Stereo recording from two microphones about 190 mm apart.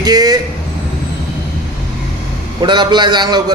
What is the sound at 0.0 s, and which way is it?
Vehicle, 20° right (ahead or behind).